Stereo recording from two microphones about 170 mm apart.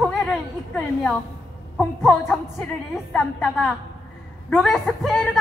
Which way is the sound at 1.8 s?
Centre (ahead or behind).